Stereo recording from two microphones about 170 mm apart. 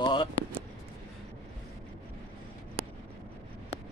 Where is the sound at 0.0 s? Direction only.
30° left (ahead or behind).